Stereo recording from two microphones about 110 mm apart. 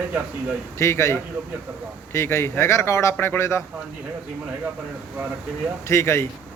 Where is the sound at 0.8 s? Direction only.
25° left (ahead or behind).